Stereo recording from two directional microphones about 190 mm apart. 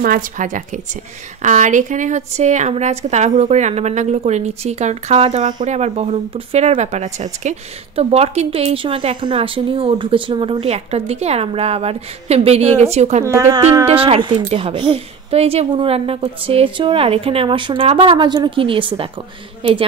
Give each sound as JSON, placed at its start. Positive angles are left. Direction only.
{"t": 0.0, "sound": "a woman's voice", "side_deg": -45}
{"t": 13.2, "sound": "speech", "side_deg": -15}
{"t": 13.8, "sound": "a woman's voice", "side_deg": -30}